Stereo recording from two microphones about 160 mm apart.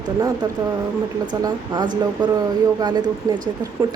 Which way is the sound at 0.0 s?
25° right (ahead or behind).